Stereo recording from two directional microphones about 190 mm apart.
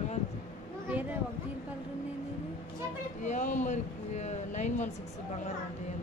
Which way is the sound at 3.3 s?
40° left (ahead or behind).